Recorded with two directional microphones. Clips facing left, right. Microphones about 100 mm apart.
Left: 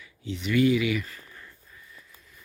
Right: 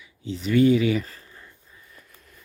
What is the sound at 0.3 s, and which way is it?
Speech, 35° right (ahead or behind).